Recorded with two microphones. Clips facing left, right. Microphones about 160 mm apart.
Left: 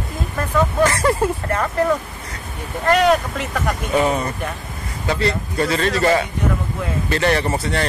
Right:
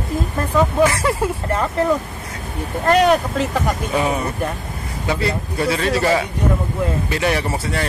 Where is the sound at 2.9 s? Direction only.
35° right (ahead or behind).